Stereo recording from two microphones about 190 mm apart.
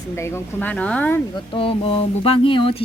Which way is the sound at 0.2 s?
15° left (ahead or behind).